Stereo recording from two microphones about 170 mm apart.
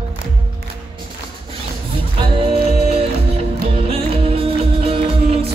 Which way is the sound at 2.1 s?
30° right (ahead or behind).